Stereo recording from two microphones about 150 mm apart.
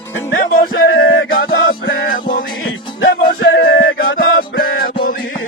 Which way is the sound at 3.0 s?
85° left.